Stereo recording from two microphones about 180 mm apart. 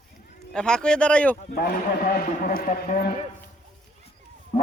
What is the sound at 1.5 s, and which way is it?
A man's voice, 55° left (ahead or behind).